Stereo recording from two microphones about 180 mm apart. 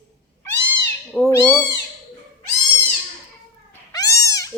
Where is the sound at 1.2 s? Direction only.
15° left (ahead or behind).